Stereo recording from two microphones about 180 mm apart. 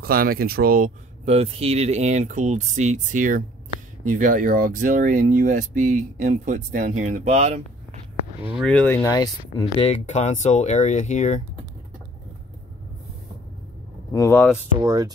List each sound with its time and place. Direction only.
0.0 s speech: 55° right (ahead or behind)
1.2 s speech: 35° right (ahead or behind)
8.5 s speech: 5° left (ahead or behind)
9.1 s speech: 20° left (ahead or behind)
9.8 s speech: 40° left (ahead or behind)
14.1 s speech: 15° left (ahead or behind)
14.8 s speech: 20° right (ahead or behind)